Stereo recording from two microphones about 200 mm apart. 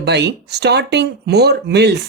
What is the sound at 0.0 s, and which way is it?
Speech, 55° right (ahead or behind).